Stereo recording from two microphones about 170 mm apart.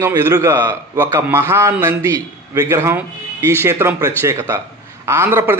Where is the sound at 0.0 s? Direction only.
20° right (ahead or behind).